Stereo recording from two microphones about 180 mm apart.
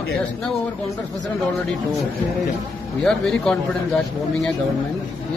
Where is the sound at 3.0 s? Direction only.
5° left (ahead or behind).